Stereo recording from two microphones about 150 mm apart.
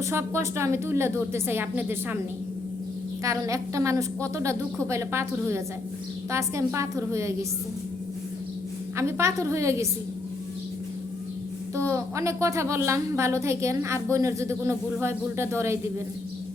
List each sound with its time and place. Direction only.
0.0 s a woman's voice: 15° right (ahead or behind)
3.2 s a woman's voice: 20° right (ahead or behind)
9.0 s a woman's voice: 20° right (ahead or behind)
11.7 s a woman's voice: 20° right (ahead or behind)